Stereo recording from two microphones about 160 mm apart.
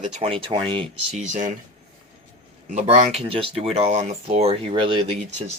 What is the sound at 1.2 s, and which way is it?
Speech, 50° right (ahead or behind).